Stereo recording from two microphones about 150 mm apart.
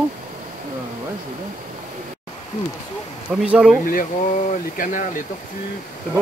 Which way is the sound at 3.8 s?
70° left (ahead or behind).